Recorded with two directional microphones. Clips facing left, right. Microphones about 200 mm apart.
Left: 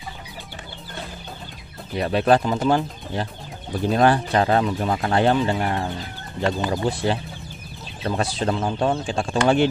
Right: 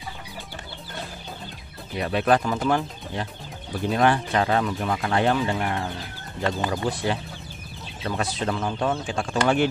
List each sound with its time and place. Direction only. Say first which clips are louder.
2.0 s speech: left 3 dB; 35° left (ahead or behind)
3.9 s speech: left 3 dB; 35° left (ahead or behind)